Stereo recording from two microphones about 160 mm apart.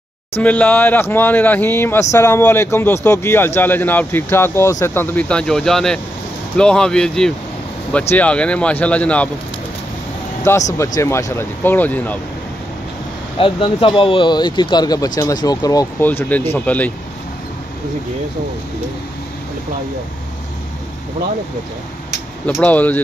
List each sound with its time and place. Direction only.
0.4 s speech: 10° left (ahead or behind)
10.5 s speech: 15° left (ahead or behind)
13.4 s speech: 30° left (ahead or behind); by 16.9 s 10° left (ahead or behind)
22.6 s speech: 10° left (ahead or behind)